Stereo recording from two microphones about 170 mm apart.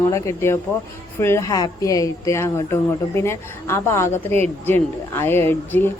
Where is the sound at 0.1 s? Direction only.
15° left (ahead or behind).